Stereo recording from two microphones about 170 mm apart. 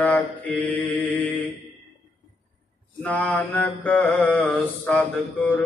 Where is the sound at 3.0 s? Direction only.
10° left (ahead or behind).